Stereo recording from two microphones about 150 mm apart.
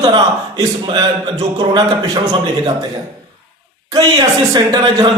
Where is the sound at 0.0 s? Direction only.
25° right (ahead or behind).